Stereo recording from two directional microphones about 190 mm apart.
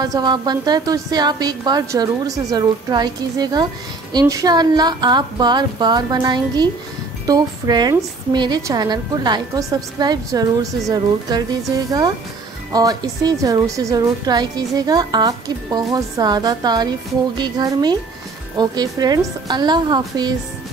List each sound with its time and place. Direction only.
0.0 s a woman's voice: 20° right (ahead or behind)
12.7 s a woman's voice: 20° right (ahead or behind)